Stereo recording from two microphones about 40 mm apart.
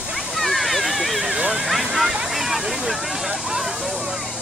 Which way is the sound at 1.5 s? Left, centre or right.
Centre.